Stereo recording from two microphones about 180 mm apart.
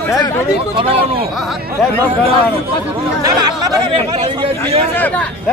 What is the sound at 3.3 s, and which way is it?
Speech, 20° right (ahead or behind).